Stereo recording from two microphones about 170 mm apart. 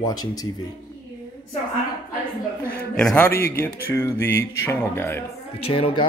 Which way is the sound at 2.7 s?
65° left (ahead or behind).